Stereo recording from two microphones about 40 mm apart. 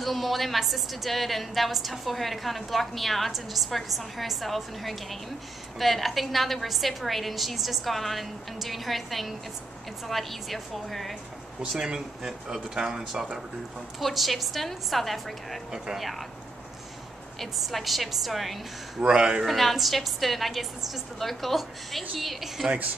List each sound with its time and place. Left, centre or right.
0.0 s a woman's voice: centre
11.6 s a man's voice: right
12.6 s speech: centre
13.9 s a woman's voice: centre
15.7 s speech: centre
16.0 s a woman's voice: centre
17.4 s a woman's voice: centre
18.9 s a man's voice: right
19.4 s a woman's voice: centre